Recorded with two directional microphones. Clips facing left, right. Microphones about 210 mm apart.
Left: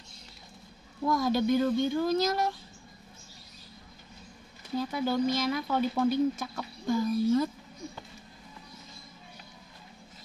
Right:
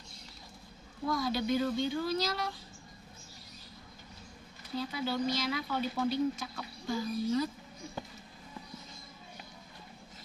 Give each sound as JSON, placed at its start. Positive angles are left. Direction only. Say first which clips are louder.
{"t": 1.0, "sound": "speech", "louder": "left 6 dB", "side_deg": 50}
{"t": 4.7, "sound": "speech", "louder": "left 5 dB", "side_deg": 50}